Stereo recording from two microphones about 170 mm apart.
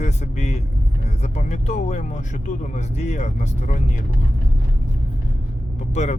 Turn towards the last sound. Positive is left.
turn(degrees=40)  # may be behind; listen again after turning